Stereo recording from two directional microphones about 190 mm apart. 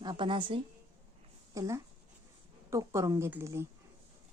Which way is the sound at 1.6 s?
15° right (ahead or behind).